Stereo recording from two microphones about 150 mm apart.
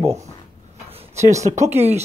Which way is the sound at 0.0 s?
20° right (ahead or behind).